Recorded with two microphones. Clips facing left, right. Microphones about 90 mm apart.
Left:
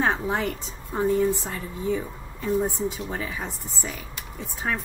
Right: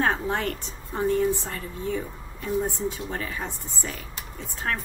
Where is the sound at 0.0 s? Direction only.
5° left (ahead or behind).